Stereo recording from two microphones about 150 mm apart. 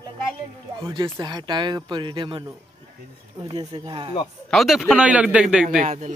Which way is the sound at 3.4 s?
35° right (ahead or behind).